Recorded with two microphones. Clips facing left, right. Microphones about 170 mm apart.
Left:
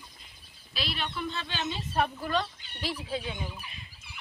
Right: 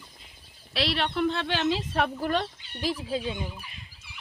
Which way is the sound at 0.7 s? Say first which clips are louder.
Right 8 dB; 75° right (ahead or behind).